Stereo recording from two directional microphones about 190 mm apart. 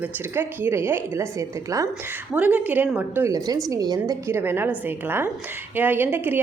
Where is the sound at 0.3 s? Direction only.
10° right (ahead or behind).